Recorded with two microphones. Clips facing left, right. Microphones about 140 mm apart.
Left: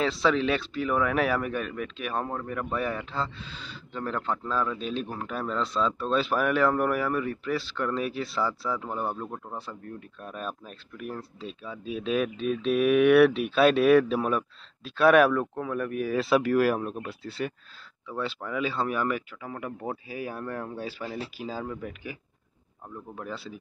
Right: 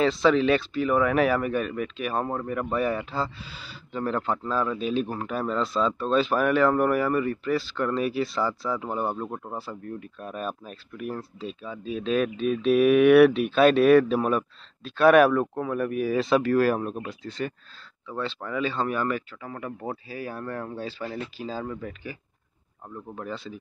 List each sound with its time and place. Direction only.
0.0 s speech: centre (ahead or behind); by 9.6 s 15° right (ahead or behind)
9.6 s speech: 5° right (ahead or behind)
23.1 s speech: 5° left (ahead or behind)